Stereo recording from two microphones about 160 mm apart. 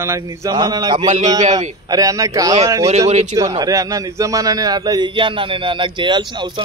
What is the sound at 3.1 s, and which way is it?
Speech, 45° right (ahead or behind).